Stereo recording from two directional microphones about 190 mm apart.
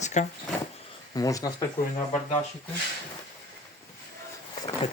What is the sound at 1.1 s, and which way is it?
Speech, 20° left (ahead or behind).